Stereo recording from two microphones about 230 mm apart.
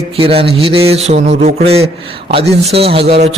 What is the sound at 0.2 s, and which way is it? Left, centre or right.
Speech, right.